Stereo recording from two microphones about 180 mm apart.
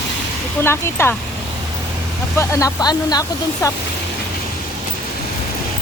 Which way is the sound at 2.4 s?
15° left (ahead or behind).